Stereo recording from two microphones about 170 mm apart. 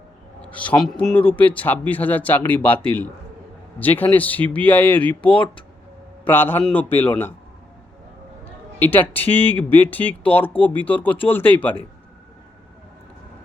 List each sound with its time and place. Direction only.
0.4 s speech: 10° left (ahead or behind)
5.2 s speech: 30° left (ahead or behind)
6.2 s speech: 10° left (ahead or behind)
8.8 s speech: 10° left (ahead or behind)